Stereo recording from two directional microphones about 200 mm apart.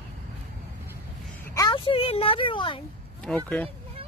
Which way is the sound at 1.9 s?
30° left (ahead or behind).